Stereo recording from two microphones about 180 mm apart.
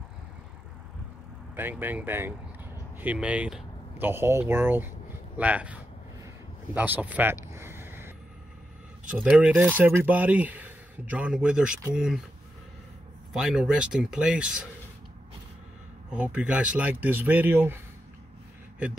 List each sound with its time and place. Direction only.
1.5 s speech: 10° right (ahead or behind)
7.5 s a sound: 15° right (ahead or behind)
9.2 s speech: 5° right (ahead or behind)
13.3 s speech: 5° right (ahead or behind)
16.1 s speech: 5° right (ahead or behind)